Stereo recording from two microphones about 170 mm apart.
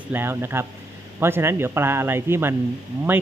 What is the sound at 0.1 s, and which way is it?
Speech, 15° right (ahead or behind).